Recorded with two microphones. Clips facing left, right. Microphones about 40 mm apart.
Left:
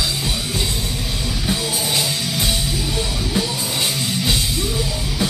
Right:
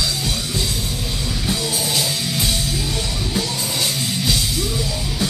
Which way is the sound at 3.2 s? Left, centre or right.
Centre.